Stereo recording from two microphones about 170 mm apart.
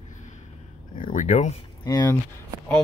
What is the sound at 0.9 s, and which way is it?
Speech, 50° left (ahead or behind).